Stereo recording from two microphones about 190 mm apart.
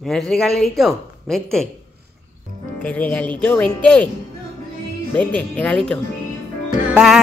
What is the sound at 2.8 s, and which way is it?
Speech, 5° left (ahead or behind).